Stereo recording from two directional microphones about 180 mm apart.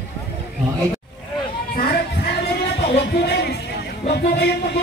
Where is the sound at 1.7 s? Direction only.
60° left (ahead or behind).